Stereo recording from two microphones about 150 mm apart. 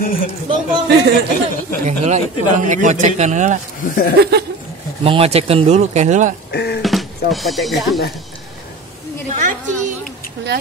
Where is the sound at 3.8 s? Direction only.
65° left (ahead or behind).